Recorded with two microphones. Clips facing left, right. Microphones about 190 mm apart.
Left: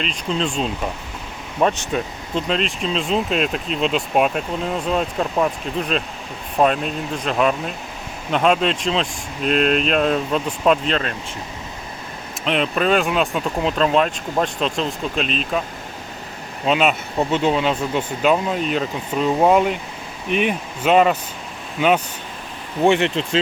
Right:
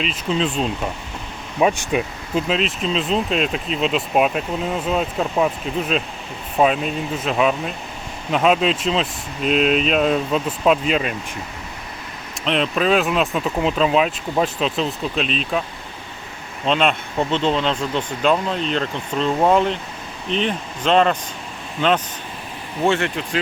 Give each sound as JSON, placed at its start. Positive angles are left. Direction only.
{"t": 0.0, "sound": "speech", "side_deg": 0}
{"t": 12.5, "sound": "speech", "side_deg": 0}
{"t": 16.6, "sound": "speech", "side_deg": 5}